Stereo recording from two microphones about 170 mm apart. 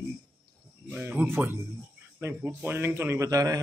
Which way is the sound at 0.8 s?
10° right (ahead or behind).